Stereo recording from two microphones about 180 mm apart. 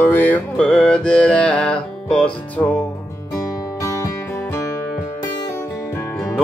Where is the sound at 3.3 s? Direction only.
15° left (ahead or behind).